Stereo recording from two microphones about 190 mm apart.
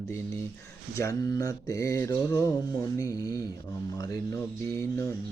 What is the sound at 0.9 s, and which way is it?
Mantra, 15° left (ahead or behind).